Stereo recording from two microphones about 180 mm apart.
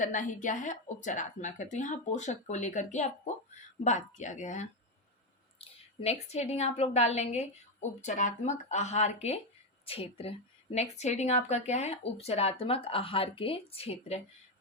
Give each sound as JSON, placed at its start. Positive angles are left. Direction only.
{"t": 0.0, "sound": "a woman's voice", "side_deg": 45}